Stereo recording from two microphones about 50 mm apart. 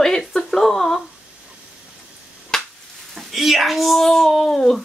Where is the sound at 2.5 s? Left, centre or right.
Centre.